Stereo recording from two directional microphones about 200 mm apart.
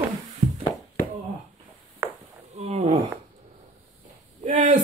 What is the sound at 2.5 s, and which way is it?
Wild animals, 30° right (ahead or behind).